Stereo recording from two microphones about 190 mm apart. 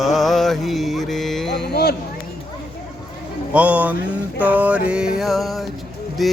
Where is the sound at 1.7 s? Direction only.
55° left (ahead or behind).